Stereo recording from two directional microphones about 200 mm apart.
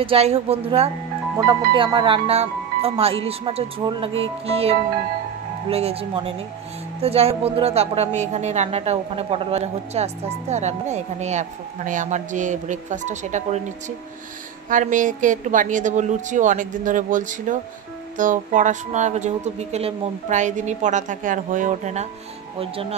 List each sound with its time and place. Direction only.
0.0 s speech: 30° right (ahead or behind)
1.3 s a woman's voice: 20° right (ahead or behind)